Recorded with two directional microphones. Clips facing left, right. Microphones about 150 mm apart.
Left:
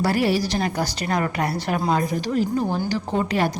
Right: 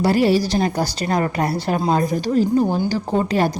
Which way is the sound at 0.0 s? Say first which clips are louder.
Right 4 dB; 25° right (ahead or behind).